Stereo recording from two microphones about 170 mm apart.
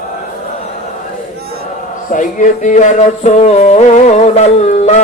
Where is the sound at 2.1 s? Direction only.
50° left (ahead or behind).